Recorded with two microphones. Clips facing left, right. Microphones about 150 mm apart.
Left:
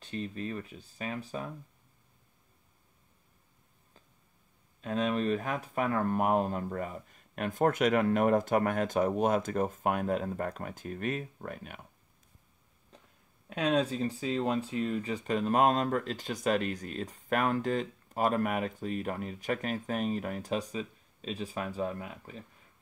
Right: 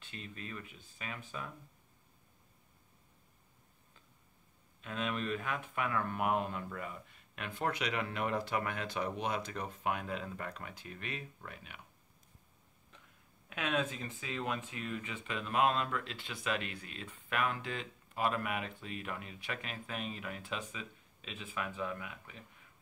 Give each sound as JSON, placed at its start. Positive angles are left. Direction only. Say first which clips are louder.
{"t": 0.0, "sound": "speech", "louder": "left 11 dB", "side_deg": 40}
{"t": 4.8, "sound": "speech", "louder": "left 8 dB", "side_deg": 40}
{"t": 12.9, "sound": "a sound", "louder": "left 5 dB", "side_deg": 35}
{"t": 13.5, "sound": "speech", "louder": "left 7 dB", "side_deg": 35}